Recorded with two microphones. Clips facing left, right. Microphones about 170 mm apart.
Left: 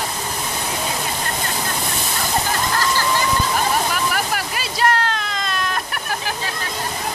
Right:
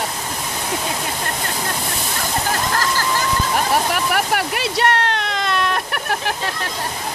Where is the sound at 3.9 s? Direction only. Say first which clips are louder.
Right 3 dB; 65° right (ahead or behind).